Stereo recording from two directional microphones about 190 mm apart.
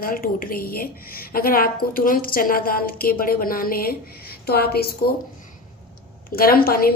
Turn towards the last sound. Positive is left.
turn(degrees=50)  # may be behind; listen again after turning